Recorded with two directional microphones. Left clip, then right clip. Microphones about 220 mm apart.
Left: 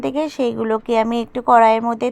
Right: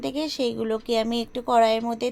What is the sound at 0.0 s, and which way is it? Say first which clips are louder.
A woman's voice: left 6 dB; 20° left (ahead or behind).